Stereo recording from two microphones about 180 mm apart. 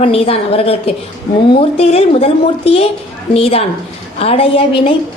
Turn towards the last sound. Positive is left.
turn(degrees=30)  # may be behind; listen again after turning